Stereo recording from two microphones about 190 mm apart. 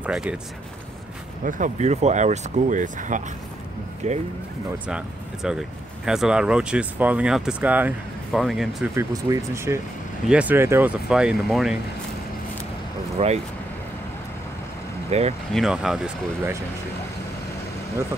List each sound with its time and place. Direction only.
0.0 s speech: 5° right (ahead or behind)
1.4 s speech: 45° right (ahead or behind)
4.8 s speech: 5° right (ahead or behind)
8.9 s speech: 15° right (ahead or behind); by 11.8 s centre (ahead or behind)
13.2 s speech: 35° right (ahead or behind)
15.0 s speech: 35° right (ahead or behind)
15.5 s speech: centre (ahead or behind)